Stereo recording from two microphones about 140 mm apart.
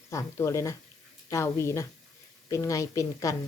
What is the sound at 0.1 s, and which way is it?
Speech, 20° left (ahead or behind).